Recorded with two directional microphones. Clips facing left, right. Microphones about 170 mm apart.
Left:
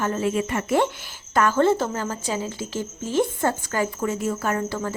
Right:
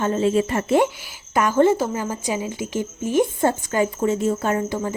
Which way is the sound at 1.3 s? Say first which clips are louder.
Right 2 dB; 15° right (ahead or behind).